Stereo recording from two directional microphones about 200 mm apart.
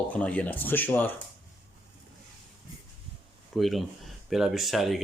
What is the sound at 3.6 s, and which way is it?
Speech, centre (ahead or behind).